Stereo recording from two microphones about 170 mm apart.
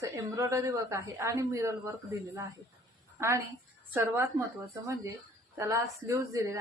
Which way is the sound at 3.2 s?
15° right (ahead or behind).